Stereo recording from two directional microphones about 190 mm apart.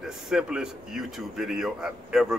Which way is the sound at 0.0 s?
Centre (ahead or behind).